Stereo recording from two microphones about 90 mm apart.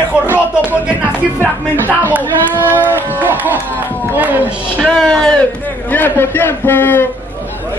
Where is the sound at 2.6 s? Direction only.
20° right (ahead or behind).